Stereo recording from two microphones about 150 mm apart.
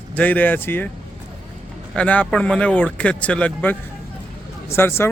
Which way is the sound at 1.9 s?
10° left (ahead or behind).